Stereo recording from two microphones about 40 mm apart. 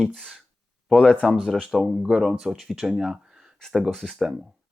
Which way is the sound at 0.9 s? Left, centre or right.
Centre.